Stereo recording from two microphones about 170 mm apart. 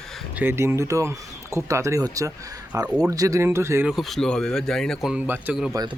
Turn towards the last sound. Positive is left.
turn(degrees=-25)  # may be behind; listen again after turning